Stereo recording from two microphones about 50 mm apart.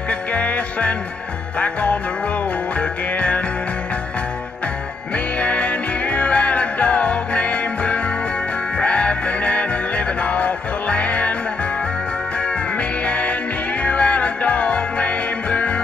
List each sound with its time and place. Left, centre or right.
0.1 s music: left
5.1 s music: left
12.4 s music: left